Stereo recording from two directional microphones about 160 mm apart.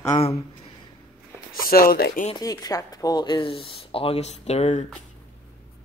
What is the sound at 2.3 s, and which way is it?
Speech, 25° left (ahead or behind).